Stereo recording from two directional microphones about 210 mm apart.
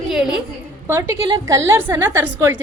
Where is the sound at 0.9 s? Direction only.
10° right (ahead or behind).